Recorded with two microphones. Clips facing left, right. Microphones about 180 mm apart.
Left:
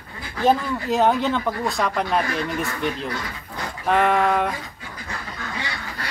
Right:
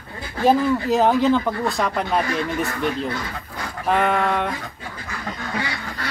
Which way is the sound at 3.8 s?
Centre (ahead or behind).